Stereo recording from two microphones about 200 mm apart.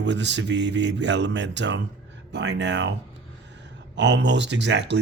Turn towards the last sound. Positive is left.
turn(degrees=-60)  # may be behind; listen again after turning